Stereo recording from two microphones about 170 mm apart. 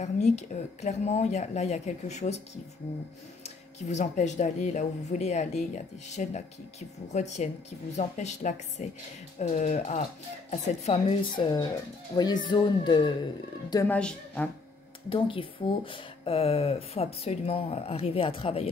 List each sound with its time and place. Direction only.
0.0 s speech: 40° left (ahead or behind)
13.8 s a woman's voice: 5° left (ahead or behind)
15.0 s speech: 30° left (ahead or behind)